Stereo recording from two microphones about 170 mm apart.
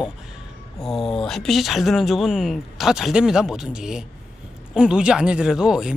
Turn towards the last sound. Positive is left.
turn(degrees=-5)  # may be behind; listen again after turning